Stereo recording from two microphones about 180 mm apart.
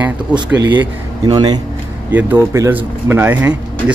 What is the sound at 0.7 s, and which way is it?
Speech, 25° right (ahead or behind).